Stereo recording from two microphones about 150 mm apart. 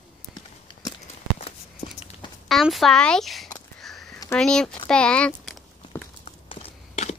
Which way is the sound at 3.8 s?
Centre (ahead or behind).